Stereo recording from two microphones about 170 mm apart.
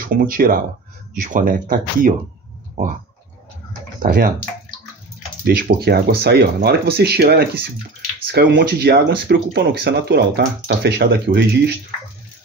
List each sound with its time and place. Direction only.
0.0 s speech: 55° right (ahead or behind)
4.0 s speech: 50° right (ahead or behind)
5.6 s speech: 65° right (ahead or behind)
8.3 s speech: 90° right; by 11.7 s 75° right (ahead or behind)